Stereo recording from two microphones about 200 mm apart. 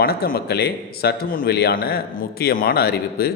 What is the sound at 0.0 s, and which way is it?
A man's voice, 50° left (ahead or behind).